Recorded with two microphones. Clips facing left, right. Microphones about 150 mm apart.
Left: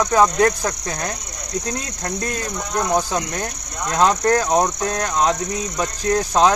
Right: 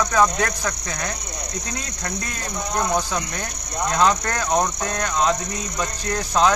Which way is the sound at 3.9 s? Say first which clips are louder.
Left 5 dB; 35° left (ahead or behind).